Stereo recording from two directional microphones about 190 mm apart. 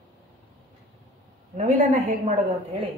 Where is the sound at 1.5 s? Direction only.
40° right (ahead or behind).